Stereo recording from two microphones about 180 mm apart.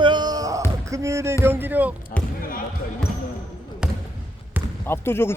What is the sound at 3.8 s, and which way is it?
Basketball bounce, 5° right (ahead or behind).